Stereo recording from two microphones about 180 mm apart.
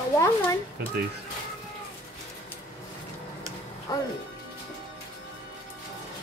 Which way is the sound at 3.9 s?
20° left (ahead or behind).